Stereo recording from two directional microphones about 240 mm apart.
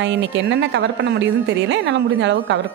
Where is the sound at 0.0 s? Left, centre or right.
Right.